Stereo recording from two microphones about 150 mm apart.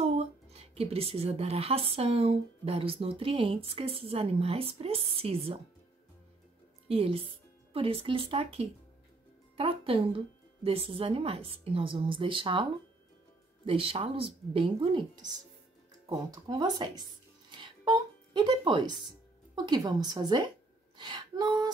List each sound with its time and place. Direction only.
0.0 s speech: 45° right (ahead or behind)
6.9 s speech: 40° right (ahead or behind)
13.7 s speech: 35° right (ahead or behind)
16.1 s speech: 25° right (ahead or behind)
17.5 s music: 30° right (ahead or behind)
19.0 s speech: 30° right (ahead or behind)